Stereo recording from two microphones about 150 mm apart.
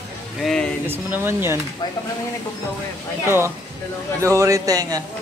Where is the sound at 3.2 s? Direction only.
15° right (ahead or behind).